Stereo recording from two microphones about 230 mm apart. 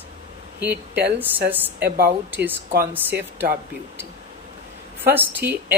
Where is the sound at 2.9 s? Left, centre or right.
Centre.